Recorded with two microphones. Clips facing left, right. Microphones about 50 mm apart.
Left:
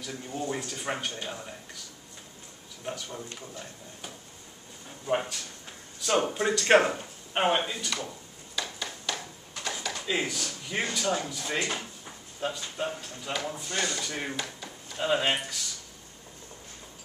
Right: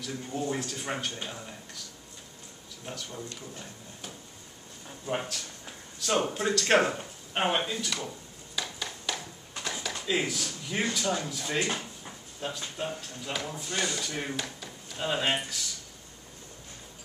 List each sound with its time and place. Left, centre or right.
0.0 s speech: centre
2.8 s speech: centre
4.8 s speech: centre
8.5 s a sound: centre
10.0 s speech: centre